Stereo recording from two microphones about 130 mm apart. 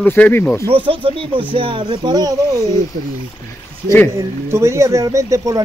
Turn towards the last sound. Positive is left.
turn(degrees=-25)  # may be behind; listen again after turning